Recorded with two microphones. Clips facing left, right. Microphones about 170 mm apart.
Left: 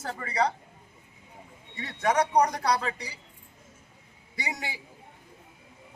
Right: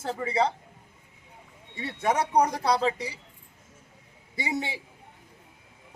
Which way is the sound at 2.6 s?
25° right (ahead or behind).